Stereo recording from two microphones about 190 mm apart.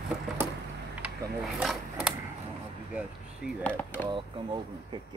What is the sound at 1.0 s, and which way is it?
Mechanisms, centre (ahead or behind).